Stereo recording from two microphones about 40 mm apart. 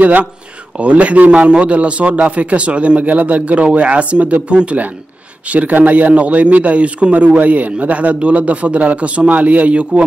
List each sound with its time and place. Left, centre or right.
0.0 s a man's voice: right